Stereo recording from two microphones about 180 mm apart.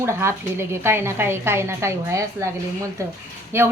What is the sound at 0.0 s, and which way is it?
A woman's voice, 15° right (ahead or behind).